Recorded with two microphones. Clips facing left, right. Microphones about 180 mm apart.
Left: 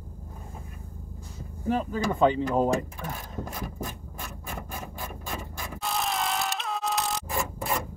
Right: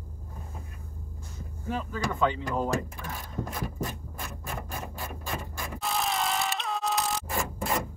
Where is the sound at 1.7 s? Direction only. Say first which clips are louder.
Left 5 dB; 40° left (ahead or behind).